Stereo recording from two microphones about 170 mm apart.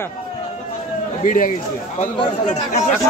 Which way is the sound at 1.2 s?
50° left (ahead or behind).